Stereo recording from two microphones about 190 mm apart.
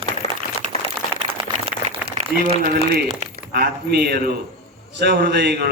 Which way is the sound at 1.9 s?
30° right (ahead or behind).